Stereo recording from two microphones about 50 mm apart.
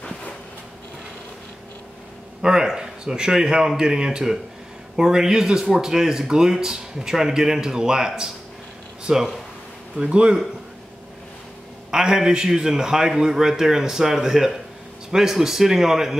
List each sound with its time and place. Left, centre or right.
2.4 s speech: centre
11.9 s speech: centre